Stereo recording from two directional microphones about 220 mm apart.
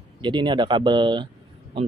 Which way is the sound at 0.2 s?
20° right (ahead or behind).